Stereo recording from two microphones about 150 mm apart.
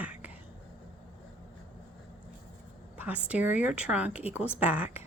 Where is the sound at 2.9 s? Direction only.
10° right (ahead or behind).